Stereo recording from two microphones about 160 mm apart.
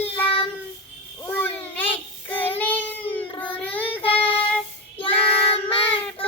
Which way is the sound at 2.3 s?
10° left (ahead or behind).